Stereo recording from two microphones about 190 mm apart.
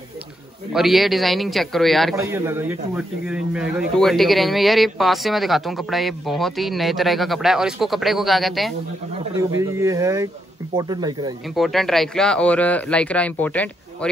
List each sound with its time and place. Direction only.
0.7 s speech: centre (ahead or behind)
2.1 s speech: 15° right (ahead or behind)
9.4 s speech: 15° right (ahead or behind)
11.5 s speech: centre (ahead or behind)